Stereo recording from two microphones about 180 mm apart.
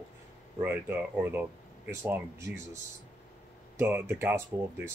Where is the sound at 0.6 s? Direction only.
10° right (ahead or behind).